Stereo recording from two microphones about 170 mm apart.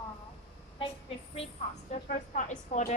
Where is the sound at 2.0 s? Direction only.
45° left (ahead or behind).